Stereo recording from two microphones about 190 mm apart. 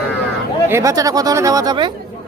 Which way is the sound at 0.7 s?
15° right (ahead or behind).